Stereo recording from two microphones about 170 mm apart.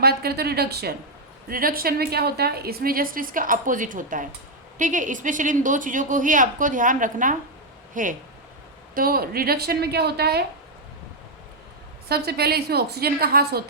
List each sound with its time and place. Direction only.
0.0 s a woman's voice: 65° right (ahead or behind)
1.5 s a woman's voice: 60° right (ahead or behind)
12.0 s a woman's voice: 70° right (ahead or behind)